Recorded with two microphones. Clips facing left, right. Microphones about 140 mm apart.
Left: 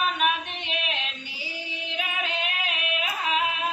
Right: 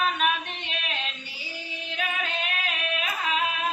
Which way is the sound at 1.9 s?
15° left (ahead or behind).